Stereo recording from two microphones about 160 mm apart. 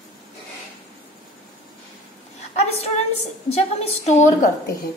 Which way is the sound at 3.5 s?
40° left (ahead or behind).